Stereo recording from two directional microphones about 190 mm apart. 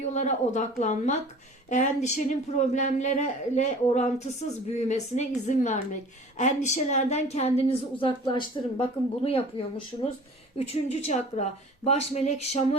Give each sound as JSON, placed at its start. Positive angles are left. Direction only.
{"t": 0.1, "sound": "a woman's voice", "side_deg": 40}